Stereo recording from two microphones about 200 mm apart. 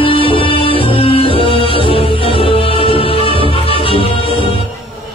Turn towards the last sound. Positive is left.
turn(degrees=30)  # may be behind; listen again after turning